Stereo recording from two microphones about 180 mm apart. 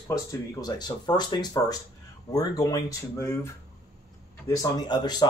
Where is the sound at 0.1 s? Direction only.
20° left (ahead or behind).